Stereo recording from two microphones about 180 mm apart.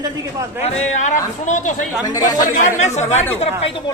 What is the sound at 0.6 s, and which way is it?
Speech, 40° left (ahead or behind).